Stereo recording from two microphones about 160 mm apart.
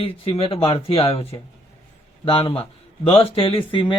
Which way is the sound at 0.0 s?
35° left (ahead or behind).